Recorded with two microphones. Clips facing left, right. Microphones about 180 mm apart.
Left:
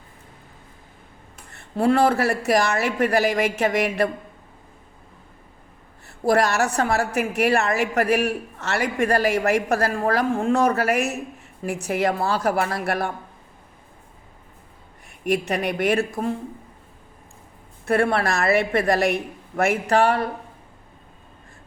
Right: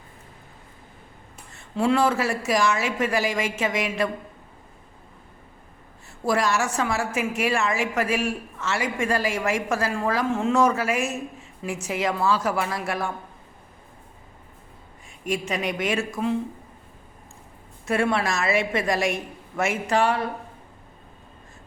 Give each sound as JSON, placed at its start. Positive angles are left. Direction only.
{"t": 1.5, "sound": "a woman's voice", "side_deg": 55}
{"t": 6.1, "sound": "a woman's voice", "side_deg": 60}
{"t": 15.2, "sound": "a woman's voice", "side_deg": 65}
{"t": 17.8, "sound": "a woman's voice", "side_deg": 55}